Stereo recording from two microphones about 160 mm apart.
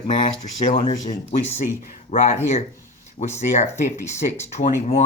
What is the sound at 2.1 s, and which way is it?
Speech, 40° left (ahead or behind).